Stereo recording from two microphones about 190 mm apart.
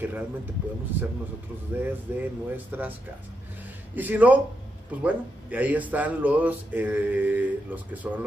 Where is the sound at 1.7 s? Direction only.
10° right (ahead or behind).